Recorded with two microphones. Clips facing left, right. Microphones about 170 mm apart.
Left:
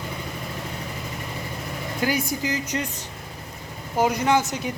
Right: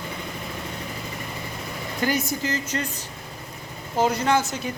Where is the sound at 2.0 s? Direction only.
10° left (ahead or behind).